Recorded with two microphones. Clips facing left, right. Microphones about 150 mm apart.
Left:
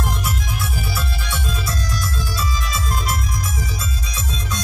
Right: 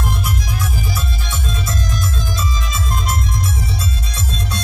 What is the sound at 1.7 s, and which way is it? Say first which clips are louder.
Music: right 2 dB; 20° right (ahead or behind).